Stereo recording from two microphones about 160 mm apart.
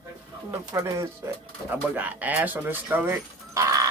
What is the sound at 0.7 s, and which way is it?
Speech, 15° right (ahead or behind).